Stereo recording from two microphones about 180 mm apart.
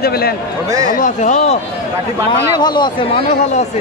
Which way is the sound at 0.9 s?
45° left (ahead or behind).